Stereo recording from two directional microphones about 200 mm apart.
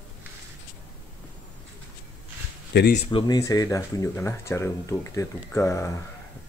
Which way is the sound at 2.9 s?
30° left (ahead or behind).